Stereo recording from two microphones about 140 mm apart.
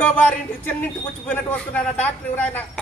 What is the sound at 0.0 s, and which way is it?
A man's voice, 10° left (ahead or behind).